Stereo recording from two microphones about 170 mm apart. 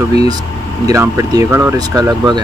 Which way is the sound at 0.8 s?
15° right (ahead or behind).